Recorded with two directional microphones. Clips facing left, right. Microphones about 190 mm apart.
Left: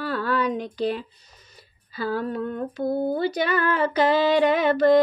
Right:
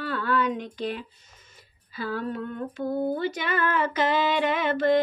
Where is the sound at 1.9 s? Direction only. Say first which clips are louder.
Left 4 dB; 40° left (ahead or behind).